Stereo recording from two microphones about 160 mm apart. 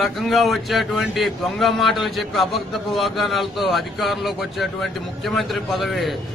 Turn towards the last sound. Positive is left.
turn(degrees=0)  # may be behind; listen again after turning